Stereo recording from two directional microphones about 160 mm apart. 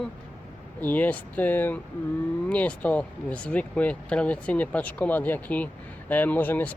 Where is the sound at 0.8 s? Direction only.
10° left (ahead or behind).